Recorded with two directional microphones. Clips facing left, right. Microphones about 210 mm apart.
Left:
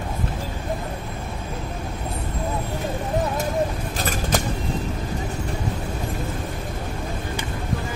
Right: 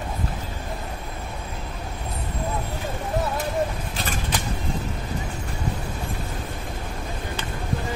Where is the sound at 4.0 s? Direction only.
45° left (ahead or behind).